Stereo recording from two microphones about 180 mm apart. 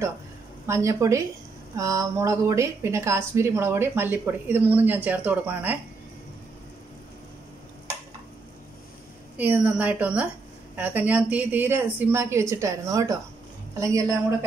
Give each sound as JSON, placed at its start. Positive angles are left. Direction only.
{"t": 0.7, "sound": "a woman's voice", "side_deg": -15}
{"t": 9.4, "sound": "a woman's voice", "side_deg": -10}